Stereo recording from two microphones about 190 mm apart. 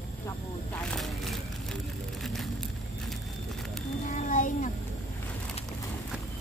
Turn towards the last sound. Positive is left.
turn(degrees=40)  # may be behind; listen again after turning